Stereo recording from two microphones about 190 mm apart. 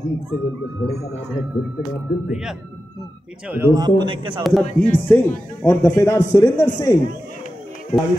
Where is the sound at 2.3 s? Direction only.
5° right (ahead or behind); by 4.4 s 25° right (ahead or behind).